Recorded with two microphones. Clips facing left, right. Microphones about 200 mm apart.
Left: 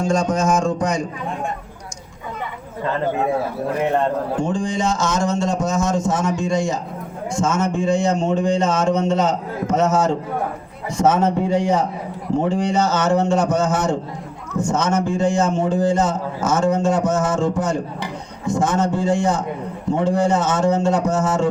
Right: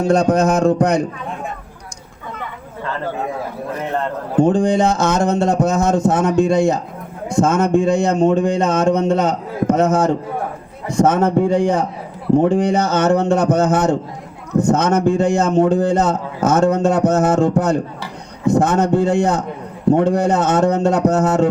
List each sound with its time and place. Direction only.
0.0 s a man's voice: 60° right (ahead or behind)
4.4 s a man's voice: 60° right (ahead or behind)